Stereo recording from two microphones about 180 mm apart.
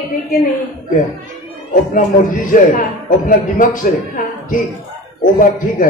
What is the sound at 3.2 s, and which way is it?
A man's voice, 45° left (ahead or behind).